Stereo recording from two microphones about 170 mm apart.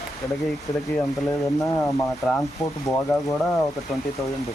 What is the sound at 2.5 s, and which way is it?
Speech, 20° left (ahead or behind).